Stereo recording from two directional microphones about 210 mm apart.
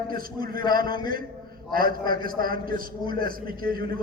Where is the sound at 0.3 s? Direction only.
45° right (ahead or behind).